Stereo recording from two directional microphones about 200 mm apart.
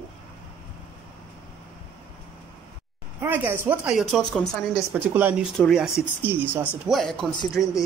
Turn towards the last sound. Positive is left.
turn(degrees=15)  # may be behind; listen again after turning